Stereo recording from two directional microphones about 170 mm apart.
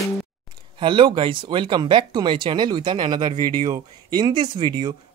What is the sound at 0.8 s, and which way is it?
Speech, 30° right (ahead or behind).